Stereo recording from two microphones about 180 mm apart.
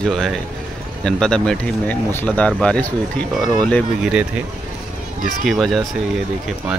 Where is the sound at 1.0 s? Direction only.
5° left (ahead or behind).